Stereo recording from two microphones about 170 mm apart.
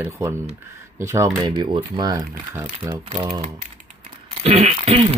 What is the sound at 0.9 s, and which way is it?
Speech, 15° right (ahead or behind).